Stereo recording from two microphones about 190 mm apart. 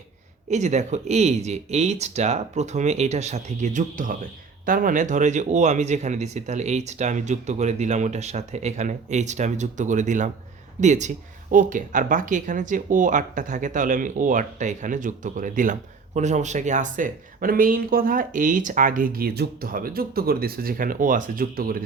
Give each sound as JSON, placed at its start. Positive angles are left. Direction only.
{"t": 0.5, "sound": "speech", "side_deg": -40}